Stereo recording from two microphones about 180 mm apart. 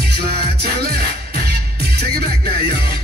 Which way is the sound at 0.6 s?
65° right (ahead or behind).